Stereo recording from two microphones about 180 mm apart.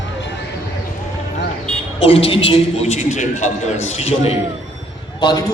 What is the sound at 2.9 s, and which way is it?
A man's voice, 45° left (ahead or behind).